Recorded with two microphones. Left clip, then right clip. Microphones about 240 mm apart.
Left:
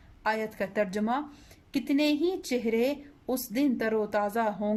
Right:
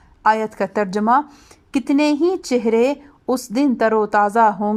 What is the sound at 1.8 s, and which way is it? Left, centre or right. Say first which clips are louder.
Speech: right 10 dB; centre.